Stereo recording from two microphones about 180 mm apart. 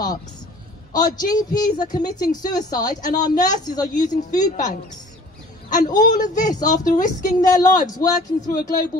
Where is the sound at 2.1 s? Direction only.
20° left (ahead or behind).